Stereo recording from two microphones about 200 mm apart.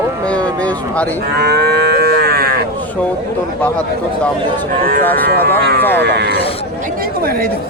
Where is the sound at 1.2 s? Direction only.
55° right (ahead or behind).